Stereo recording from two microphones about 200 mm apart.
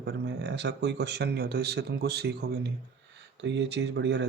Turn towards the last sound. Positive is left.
turn(degrees=-60)  # may be behind; listen again after turning